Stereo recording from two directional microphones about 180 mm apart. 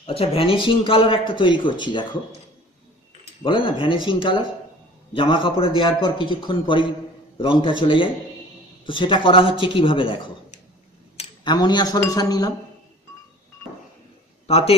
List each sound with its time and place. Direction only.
0.0 s a man's voice: 30° left (ahead or behind)
3.4 s a man's voice: 30° left (ahead or behind)
14.5 s a man's voice: 35° left (ahead or behind)